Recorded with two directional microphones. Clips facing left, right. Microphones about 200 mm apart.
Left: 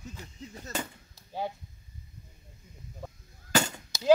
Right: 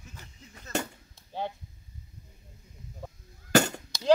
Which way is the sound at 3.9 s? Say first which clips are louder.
Left 3 dB; 5° left (ahead or behind).